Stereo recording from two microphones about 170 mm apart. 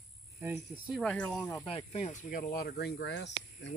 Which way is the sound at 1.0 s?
5° left (ahead or behind).